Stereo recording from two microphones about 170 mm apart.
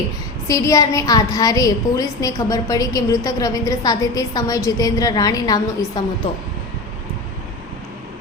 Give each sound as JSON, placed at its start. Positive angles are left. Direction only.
{"t": 0.4, "sound": "a woman's voice", "side_deg": 20}